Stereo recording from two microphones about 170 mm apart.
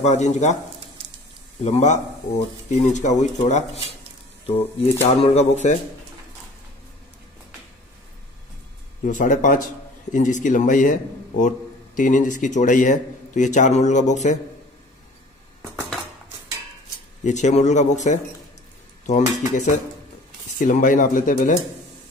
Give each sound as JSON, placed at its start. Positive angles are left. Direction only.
{"t": 0.0, "sound": "a man's voice", "side_deg": 40}
{"t": 1.6, "sound": "a man's voice", "side_deg": 40}
{"t": 5.0, "sound": "speech", "side_deg": 40}
{"t": 9.0, "sound": "a man's voice", "side_deg": 50}
{"t": 17.2, "sound": "a man's voice", "side_deg": 45}